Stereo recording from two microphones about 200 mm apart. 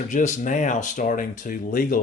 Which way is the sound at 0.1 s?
40° left (ahead or behind).